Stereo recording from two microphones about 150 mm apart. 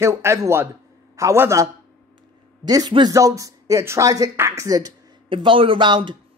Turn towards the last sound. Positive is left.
turn(degrees=-30)  # may be behind; listen again after turning